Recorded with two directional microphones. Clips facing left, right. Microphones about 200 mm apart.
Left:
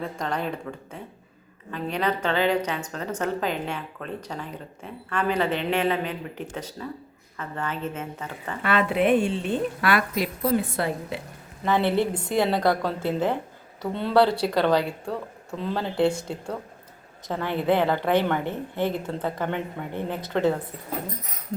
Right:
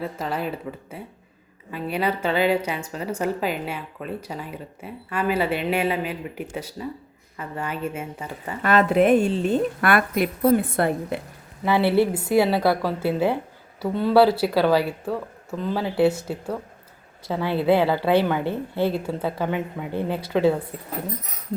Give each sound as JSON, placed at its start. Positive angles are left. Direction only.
{"t": 0.0, "sound": "a woman's voice", "side_deg": -5}
{"t": 8.6, "sound": "a woman's voice", "side_deg": -45}
{"t": 11.6, "sound": "a woman's voice", "side_deg": -10}